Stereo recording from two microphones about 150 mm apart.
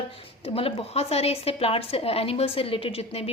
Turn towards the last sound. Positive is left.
turn(degrees=40)  # may be behind; listen again after turning